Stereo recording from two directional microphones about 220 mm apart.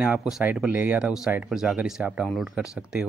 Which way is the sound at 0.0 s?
5° right (ahead or behind).